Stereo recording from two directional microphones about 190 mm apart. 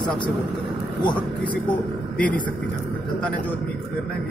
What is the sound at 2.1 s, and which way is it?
Speech, 5° left (ahead or behind).